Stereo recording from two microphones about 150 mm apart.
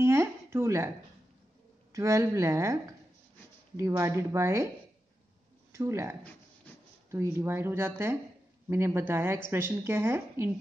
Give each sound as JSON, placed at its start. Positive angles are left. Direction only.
{"t": 0.0, "sound": "a sound", "side_deg": -15}
{"t": 1.9, "sound": "speech", "side_deg": -20}
{"t": 5.7, "sound": "a woman's voice", "side_deg": -20}